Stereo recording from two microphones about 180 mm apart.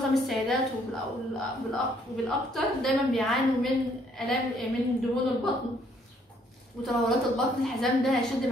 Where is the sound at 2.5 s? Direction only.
Centre (ahead or behind).